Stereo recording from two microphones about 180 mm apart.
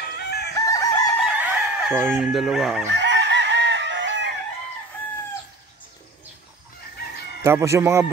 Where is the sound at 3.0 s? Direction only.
75° right (ahead or behind).